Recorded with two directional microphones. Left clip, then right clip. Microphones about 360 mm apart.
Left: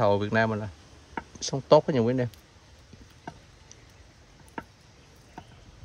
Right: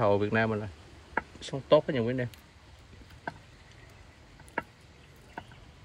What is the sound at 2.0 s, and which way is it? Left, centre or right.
Speech, left.